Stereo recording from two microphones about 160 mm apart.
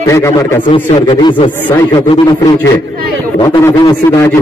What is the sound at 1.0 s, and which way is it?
Speech, 30° left (ahead or behind).